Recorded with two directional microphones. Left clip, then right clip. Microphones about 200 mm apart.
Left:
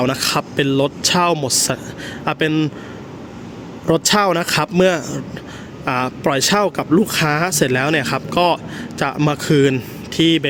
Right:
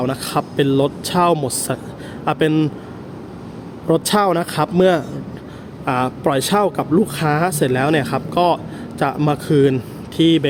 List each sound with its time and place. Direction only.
0.0 s speech: 10° left (ahead or behind)
3.8 s speech: 10° left (ahead or behind)